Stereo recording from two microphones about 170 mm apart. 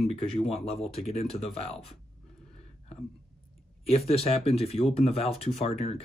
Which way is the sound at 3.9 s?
35° left (ahead or behind).